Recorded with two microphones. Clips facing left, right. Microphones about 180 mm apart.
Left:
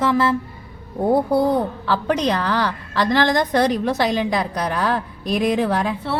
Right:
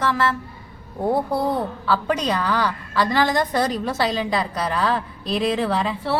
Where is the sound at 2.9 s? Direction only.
5° right (ahead or behind).